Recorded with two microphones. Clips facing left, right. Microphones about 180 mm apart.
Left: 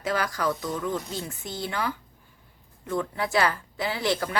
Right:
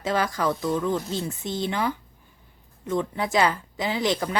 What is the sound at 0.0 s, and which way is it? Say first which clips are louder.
A woman's voice: right 2 dB; 25° right (ahead or behind).